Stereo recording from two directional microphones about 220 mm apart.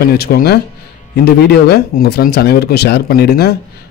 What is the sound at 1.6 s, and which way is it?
Speech, 45° left (ahead or behind).